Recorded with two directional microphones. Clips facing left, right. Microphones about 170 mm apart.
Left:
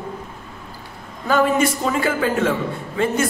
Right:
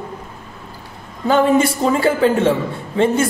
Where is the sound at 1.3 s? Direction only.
30° right (ahead or behind).